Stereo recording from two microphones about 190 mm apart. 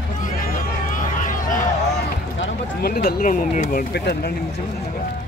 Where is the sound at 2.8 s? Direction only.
55° left (ahead or behind).